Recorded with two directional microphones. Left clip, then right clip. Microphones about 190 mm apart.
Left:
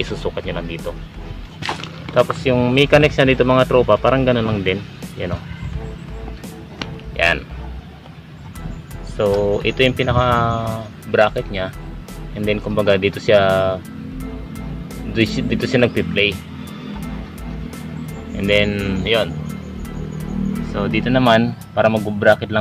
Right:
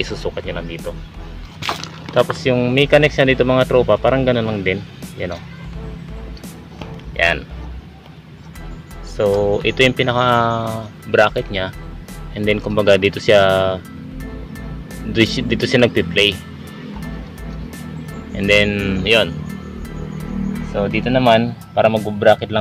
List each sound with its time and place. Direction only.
0.0 s speech: centre (ahead or behind)
2.4 s speech: 5° right (ahead or behind)
7.2 s speech: centre (ahead or behind)
9.1 s speech: 5° right (ahead or behind); by 13.7 s 25° right (ahead or behind)
15.1 s speech: 25° right (ahead or behind)
18.4 s speech: 20° right (ahead or behind)
20.7 s speech: 10° right (ahead or behind)